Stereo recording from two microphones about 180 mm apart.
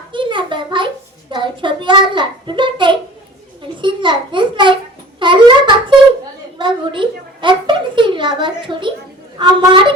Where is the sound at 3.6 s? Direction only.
25° right (ahead or behind).